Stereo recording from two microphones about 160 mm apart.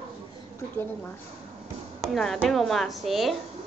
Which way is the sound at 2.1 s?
Centre (ahead or behind).